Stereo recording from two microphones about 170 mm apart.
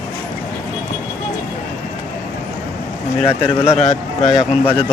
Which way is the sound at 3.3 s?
35° left (ahead or behind).